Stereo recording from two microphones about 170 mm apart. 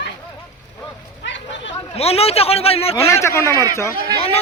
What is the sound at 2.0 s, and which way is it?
Speech, 35° left (ahead or behind).